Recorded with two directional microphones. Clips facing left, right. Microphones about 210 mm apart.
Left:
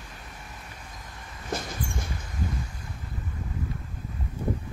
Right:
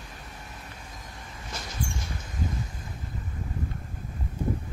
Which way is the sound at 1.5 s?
55° left (ahead or behind).